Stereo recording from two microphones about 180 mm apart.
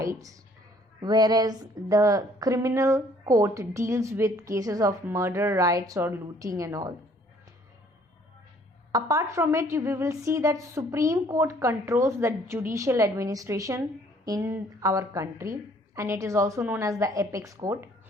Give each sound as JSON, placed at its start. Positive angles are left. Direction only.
{"t": 0.0, "sound": "a woman's voice", "side_deg": -20}
{"t": 8.9, "sound": "a woman's voice", "side_deg": -20}